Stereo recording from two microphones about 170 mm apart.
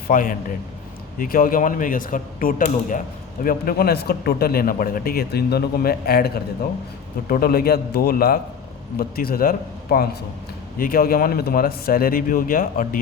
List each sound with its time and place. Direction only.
0.1 s a man's voice: 55° left (ahead or behind)